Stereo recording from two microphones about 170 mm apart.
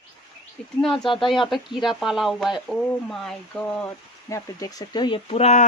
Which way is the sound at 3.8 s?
20° left (ahead or behind).